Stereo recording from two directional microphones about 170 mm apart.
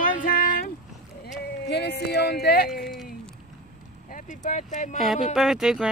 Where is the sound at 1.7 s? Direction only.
75° left (ahead or behind).